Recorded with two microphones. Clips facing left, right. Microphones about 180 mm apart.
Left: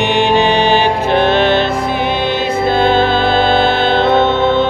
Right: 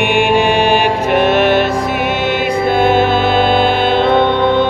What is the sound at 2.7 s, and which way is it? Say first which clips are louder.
Music: right 1 dB; 10° right (ahead or behind).